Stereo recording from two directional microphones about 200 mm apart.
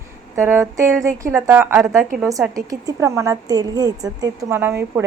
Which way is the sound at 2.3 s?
15° right (ahead or behind).